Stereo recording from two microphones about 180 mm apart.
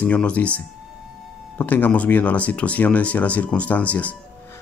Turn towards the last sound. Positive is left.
turn(degrees=10)  # may be behind; listen again after turning